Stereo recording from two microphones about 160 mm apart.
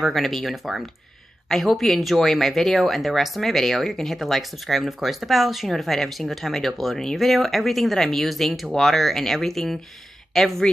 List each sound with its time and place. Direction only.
0.0 s speech: centre (ahead or behind)